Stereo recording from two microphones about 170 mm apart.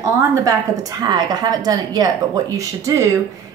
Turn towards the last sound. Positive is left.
turn(degrees=-20)  # may be behind; listen again after turning